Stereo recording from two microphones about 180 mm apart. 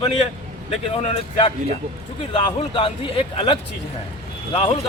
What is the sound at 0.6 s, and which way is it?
Speech, 40° left (ahead or behind).